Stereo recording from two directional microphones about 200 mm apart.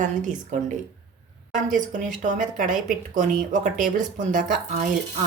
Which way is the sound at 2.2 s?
40° right (ahead or behind).